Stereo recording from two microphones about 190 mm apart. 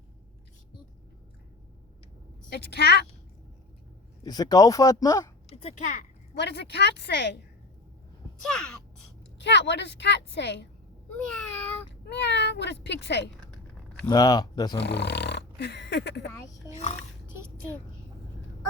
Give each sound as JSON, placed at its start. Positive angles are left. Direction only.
{"t": 2.5, "sound": "speech", "side_deg": 60}
{"t": 4.2, "sound": "speech", "side_deg": 20}
{"t": 5.5, "sound": "speech", "side_deg": 40}
{"t": 6.3, "sound": "speech", "side_deg": 65}
{"t": 8.4, "sound": "speech", "side_deg": 5}
{"t": 9.4, "sound": "a woman's voice", "side_deg": 65}
{"t": 11.3, "sound": "a sound", "side_deg": 5}
{"t": 12.0, "sound": "speech", "side_deg": 65}
{"t": 14.1, "sound": "speech", "side_deg": 20}
{"t": 14.8, "sound": "speech", "side_deg": 65}